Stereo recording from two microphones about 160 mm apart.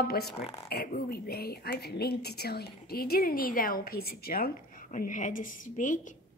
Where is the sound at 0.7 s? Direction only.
75° left (ahead or behind); by 6.1 s 50° left (ahead or behind).